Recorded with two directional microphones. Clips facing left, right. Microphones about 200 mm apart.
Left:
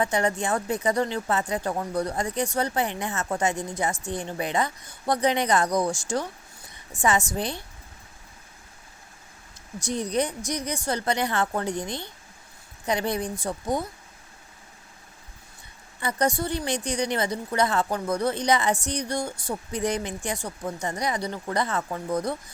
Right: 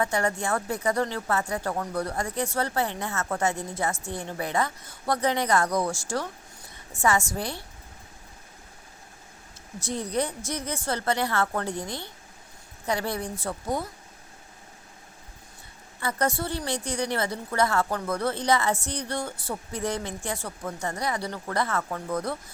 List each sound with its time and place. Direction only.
0.0 s a woman's voice: 20° left (ahead or behind)
9.8 s a woman's voice: 15° left (ahead or behind)
16.0 s a woman's voice: 15° left (ahead or behind)